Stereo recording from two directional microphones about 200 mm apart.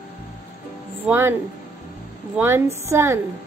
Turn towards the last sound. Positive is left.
turn(degrees=-15)  # may be behind; listen again after turning